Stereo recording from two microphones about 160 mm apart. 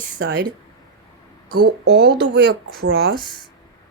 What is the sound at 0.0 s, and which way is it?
Speech, 65° right (ahead or behind).